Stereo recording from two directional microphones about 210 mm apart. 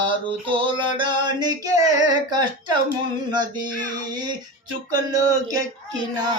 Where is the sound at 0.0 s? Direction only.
25° right (ahead or behind).